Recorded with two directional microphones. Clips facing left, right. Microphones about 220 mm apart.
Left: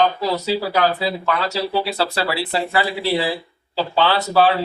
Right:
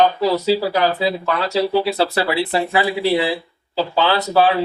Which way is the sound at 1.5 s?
20° right (ahead or behind).